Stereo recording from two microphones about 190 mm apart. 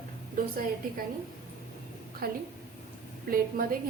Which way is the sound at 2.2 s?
50° right (ahead or behind).